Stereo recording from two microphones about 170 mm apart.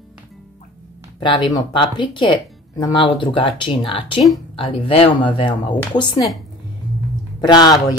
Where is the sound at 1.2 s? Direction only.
25° left (ahead or behind).